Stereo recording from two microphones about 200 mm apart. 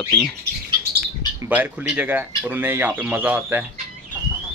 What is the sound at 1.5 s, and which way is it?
Speech, 5° right (ahead or behind).